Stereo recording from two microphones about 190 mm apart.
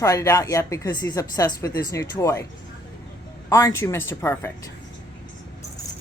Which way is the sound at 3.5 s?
15° left (ahead or behind).